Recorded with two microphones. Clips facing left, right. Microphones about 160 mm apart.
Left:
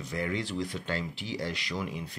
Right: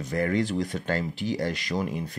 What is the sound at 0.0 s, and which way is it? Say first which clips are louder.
Speech: right 7 dB; 50° right (ahead or behind).